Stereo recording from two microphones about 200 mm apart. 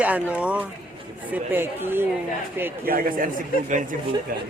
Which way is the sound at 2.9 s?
45° right (ahead or behind).